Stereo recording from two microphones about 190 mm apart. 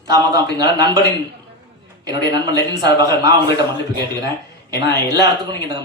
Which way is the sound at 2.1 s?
20° right (ahead or behind).